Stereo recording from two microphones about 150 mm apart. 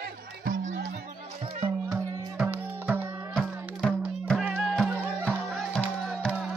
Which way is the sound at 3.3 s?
5° left (ahead or behind).